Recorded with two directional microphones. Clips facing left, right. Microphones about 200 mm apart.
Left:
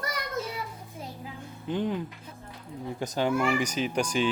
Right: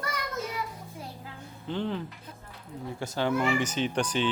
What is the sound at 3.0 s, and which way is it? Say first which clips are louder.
Speech: left 1 dB; 15° left (ahead or behind).